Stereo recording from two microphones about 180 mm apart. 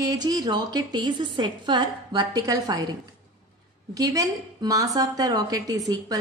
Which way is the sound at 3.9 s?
20° right (ahead or behind).